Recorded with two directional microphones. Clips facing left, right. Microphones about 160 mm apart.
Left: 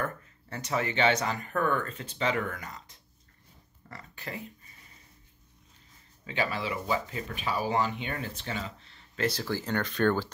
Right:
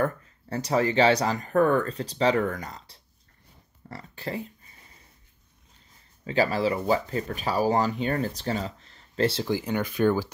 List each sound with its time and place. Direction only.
0.0 s speech: 35° right (ahead or behind)
6.2 s speech: 35° right (ahead or behind); by 10.3 s 10° right (ahead or behind)